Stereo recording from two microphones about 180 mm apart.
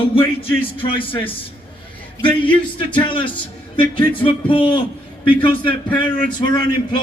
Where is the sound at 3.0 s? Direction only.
30° left (ahead or behind).